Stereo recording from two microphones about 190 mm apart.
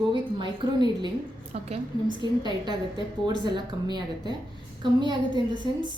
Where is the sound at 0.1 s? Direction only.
25° right (ahead or behind).